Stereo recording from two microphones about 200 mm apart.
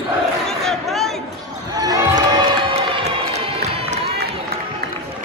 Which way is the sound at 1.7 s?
20° right (ahead or behind).